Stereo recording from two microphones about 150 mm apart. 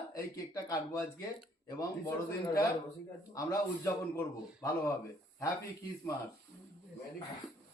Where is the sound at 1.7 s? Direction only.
25° left (ahead or behind).